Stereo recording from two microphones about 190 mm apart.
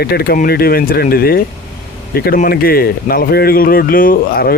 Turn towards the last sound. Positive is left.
turn(degrees=50)  # may be behind; listen again after turning